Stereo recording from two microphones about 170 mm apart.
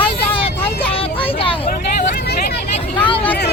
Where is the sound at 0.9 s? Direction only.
30° left (ahead or behind).